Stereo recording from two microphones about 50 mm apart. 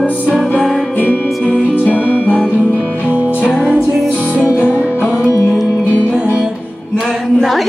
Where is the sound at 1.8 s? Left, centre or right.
Left.